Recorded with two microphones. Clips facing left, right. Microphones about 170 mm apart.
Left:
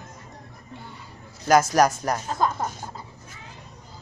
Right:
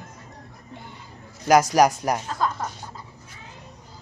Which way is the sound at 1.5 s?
15° right (ahead or behind).